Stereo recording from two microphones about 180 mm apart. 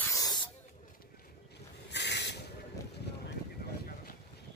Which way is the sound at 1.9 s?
70° left (ahead or behind).